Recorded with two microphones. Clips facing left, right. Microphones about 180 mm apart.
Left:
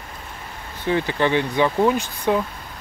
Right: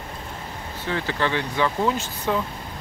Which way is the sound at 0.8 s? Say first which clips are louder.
Left 5 dB; 15° left (ahead or behind).